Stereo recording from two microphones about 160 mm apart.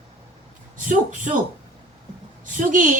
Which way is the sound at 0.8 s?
55° right (ahead or behind).